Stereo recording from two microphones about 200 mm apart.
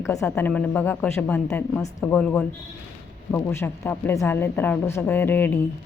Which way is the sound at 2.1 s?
5° left (ahead or behind).